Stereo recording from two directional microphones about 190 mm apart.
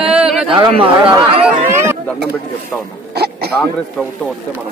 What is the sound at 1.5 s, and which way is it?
Chatter, 15° right (ahead or behind).